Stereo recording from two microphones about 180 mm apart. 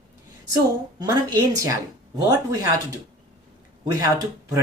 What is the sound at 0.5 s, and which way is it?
A woman's voice, 20° right (ahead or behind).